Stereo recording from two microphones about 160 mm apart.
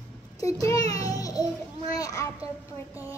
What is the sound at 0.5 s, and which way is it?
A child's voice, 20° left (ahead or behind).